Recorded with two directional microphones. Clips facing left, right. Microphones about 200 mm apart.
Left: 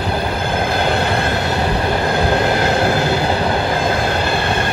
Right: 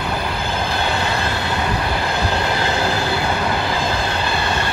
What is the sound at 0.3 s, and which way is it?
Train, 55° left (ahead or behind).